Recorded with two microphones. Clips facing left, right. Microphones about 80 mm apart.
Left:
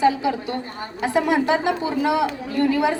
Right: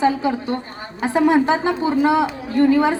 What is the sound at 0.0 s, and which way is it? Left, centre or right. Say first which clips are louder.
A woman's voice: right 1 dB; right.